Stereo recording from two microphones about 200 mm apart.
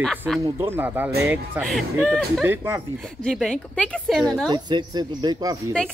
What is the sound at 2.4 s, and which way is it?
Speech, 10° right (ahead or behind).